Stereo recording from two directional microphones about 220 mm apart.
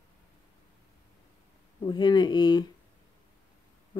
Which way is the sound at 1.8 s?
20° left (ahead or behind).